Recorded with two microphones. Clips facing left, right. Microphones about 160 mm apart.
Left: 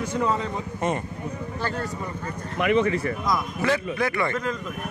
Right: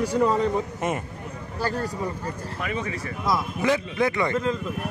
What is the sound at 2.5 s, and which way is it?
Speech, 60° left (ahead or behind).